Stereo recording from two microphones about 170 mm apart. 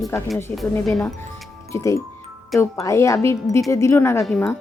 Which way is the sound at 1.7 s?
20° left (ahead or behind).